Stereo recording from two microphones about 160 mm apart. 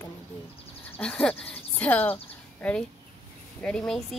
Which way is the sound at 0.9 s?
5° left (ahead or behind).